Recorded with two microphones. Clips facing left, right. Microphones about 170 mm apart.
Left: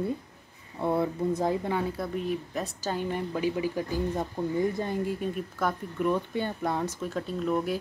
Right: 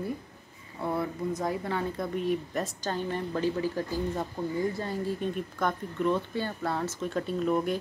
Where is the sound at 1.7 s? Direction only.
5° left (ahead or behind).